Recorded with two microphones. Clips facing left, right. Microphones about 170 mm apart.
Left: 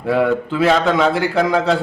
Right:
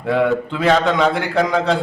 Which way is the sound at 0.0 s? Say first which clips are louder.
Left 1 dB; 5° left (ahead or behind).